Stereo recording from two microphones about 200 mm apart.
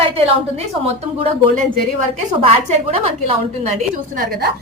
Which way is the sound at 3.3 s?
35° right (ahead or behind).